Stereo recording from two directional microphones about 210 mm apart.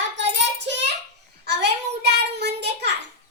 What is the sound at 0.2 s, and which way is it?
Child singing, 55° right (ahead or behind).